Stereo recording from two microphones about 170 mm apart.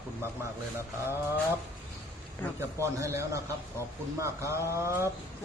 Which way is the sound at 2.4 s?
10° left (ahead or behind).